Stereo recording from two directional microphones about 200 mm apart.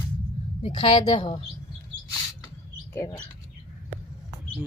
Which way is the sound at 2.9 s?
15° left (ahead or behind).